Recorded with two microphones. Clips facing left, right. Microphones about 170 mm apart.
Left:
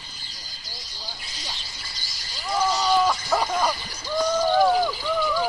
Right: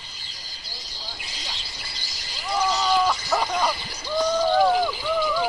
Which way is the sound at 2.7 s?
10° left (ahead or behind).